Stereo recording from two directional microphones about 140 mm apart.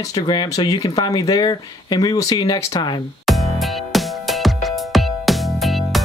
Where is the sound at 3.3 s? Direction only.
Centre (ahead or behind).